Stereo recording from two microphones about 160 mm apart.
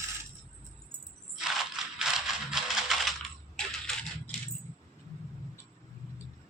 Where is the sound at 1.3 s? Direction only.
Centre (ahead or behind).